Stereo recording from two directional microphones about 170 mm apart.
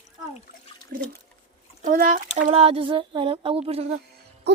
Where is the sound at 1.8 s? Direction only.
50° right (ahead or behind).